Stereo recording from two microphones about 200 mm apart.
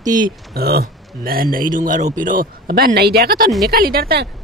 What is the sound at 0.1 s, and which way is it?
Speech, 50° right (ahead or behind).